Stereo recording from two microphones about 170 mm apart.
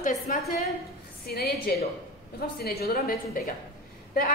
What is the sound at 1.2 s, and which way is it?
A woman's voice, 65° left (ahead or behind).